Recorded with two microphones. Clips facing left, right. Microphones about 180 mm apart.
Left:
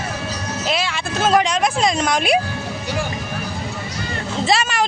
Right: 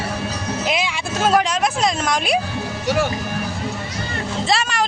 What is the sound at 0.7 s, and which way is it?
Vehicle, 15° right (ahead or behind).